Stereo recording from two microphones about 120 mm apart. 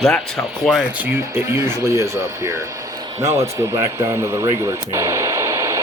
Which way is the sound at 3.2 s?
25° right (ahead or behind).